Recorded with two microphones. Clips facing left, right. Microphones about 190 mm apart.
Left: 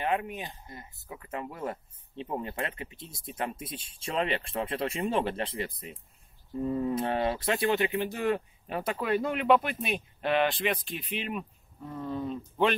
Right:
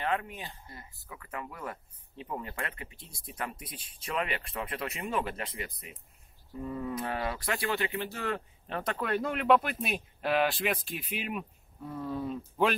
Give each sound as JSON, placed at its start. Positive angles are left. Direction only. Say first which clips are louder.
{"t": 0.0, "sound": "speech", "louder": "left 3 dB", "side_deg": 15}